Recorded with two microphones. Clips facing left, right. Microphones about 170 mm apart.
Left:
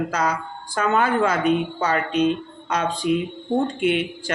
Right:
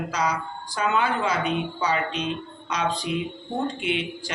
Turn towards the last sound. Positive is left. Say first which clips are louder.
# left 6 dB
turn(degrees=50)  # may be behind; listen again after turning